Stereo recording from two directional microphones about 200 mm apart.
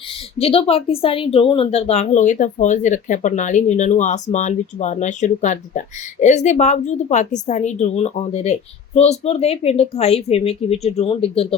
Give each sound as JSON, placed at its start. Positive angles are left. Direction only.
{"t": 0.3, "sound": "speech", "side_deg": 30}